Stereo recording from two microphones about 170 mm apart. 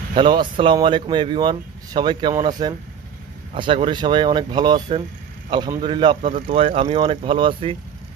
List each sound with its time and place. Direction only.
0.1 s speech: 25° right (ahead or behind)
4.7 s speech: 45° right (ahead or behind)
5.5 s speech: 25° right (ahead or behind)